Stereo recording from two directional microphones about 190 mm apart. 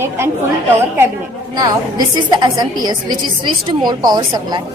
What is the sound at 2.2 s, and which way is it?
A woman's voice, 20° right (ahead or behind).